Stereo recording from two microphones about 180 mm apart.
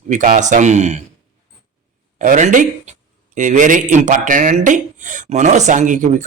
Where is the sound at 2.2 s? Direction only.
45° right (ahead or behind).